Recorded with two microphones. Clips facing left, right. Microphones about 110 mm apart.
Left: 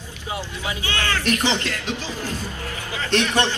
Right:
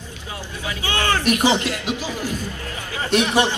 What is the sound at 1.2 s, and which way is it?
Speech, 15° right (ahead or behind).